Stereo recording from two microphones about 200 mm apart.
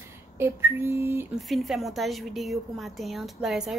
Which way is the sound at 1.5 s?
Centre (ahead or behind).